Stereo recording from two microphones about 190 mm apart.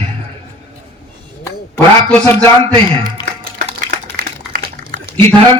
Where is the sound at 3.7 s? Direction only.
40° right (ahead or behind).